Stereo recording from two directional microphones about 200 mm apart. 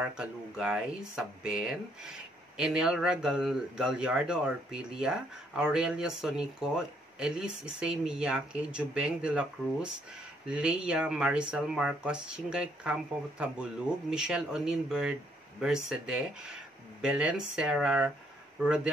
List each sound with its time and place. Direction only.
0.0 s speech: 5° right (ahead or behind)